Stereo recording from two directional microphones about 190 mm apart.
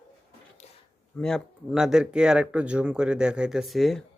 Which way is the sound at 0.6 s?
35° left (ahead or behind).